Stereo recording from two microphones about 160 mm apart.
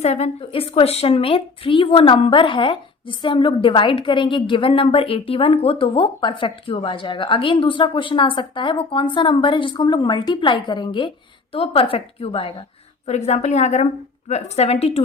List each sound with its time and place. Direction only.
0.0 s a woman's voice: 45° left (ahead or behind)